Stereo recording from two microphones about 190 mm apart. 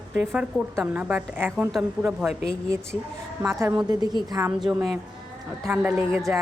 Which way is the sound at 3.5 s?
15° right (ahead or behind).